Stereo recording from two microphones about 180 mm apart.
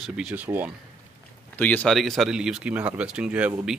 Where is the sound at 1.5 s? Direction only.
10° left (ahead or behind).